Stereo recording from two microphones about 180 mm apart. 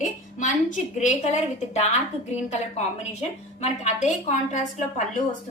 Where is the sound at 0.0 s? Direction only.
45° left (ahead or behind).